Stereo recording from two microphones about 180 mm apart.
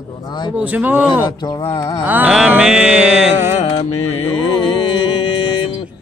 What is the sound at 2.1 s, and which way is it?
Mantra, 5° right (ahead or behind).